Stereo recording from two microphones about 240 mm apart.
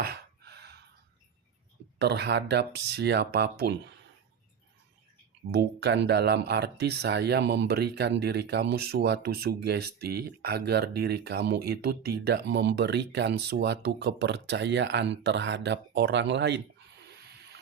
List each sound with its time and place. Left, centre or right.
0.0 s a sound: right
2.0 s speech: right
5.5 s speech: right